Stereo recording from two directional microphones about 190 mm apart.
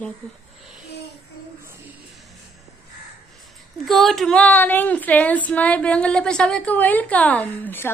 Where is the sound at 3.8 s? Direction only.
Centre (ahead or behind).